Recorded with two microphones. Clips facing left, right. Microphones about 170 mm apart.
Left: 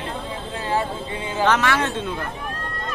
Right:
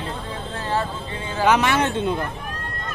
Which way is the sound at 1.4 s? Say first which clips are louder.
Right 2 dB; 15° right (ahead or behind).